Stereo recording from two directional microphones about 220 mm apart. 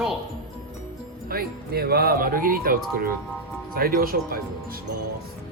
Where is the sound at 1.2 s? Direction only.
45° right (ahead or behind).